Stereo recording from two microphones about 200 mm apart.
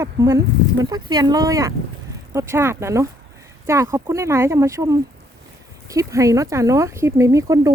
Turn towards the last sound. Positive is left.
turn(degrees=-15)  # may be behind; listen again after turning